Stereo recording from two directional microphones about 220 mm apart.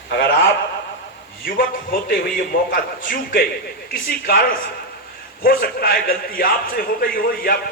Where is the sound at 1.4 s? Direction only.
40° left (ahead or behind).